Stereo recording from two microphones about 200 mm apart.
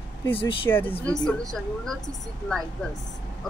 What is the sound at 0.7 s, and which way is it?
A woman's voice, 10° left (ahead or behind).